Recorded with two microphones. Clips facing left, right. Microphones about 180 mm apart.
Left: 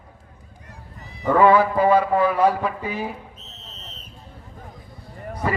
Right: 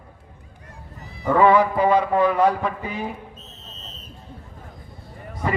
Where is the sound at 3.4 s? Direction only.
70° left (ahead or behind).